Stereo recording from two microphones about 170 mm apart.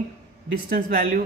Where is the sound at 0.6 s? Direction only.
65° right (ahead or behind).